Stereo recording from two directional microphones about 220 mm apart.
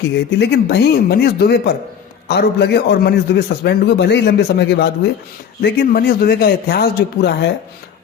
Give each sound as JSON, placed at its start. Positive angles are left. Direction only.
{"t": 0.3, "sound": "a man's voice", "side_deg": 50}